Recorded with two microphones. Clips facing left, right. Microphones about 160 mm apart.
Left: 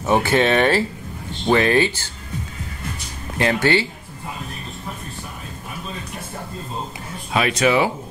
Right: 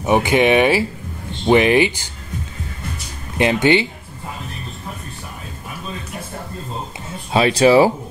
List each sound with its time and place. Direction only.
0.0 s speech: 15° right (ahead or behind)
3.3 s speech: 20° right (ahead or behind)
7.3 s speech: 30° right (ahead or behind)